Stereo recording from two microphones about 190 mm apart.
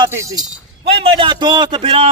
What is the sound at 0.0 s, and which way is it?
A man's voice, 15° right (ahead or behind).